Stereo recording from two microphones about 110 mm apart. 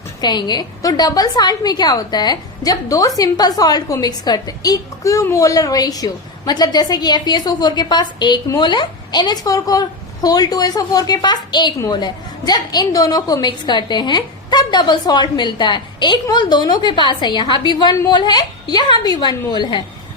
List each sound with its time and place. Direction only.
0.2 s a woman's voice: 40° left (ahead or behind)